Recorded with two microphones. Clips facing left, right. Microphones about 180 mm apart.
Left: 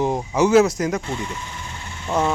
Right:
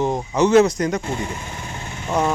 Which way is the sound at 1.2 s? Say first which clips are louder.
Right 2 dB; 50° right (ahead or behind).